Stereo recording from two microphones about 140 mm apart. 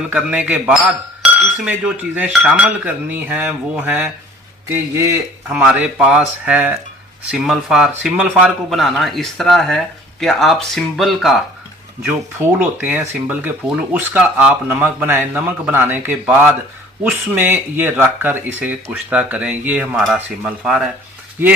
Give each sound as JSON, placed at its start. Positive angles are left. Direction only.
{"t": 0.1, "sound": "speech", "side_deg": -10}
{"t": 5.5, "sound": "a man's voice", "side_deg": -10}
{"t": 12.8, "sound": "speech", "side_deg": -10}